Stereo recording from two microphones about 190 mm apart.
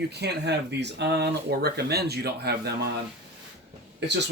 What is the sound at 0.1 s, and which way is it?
Speech, 60° right (ahead or behind).